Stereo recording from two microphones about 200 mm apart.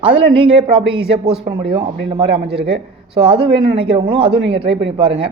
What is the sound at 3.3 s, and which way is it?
A man's voice, 25° right (ahead or behind).